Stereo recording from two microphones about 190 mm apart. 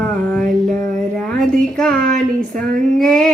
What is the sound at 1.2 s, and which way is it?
Speech, centre (ahead or behind).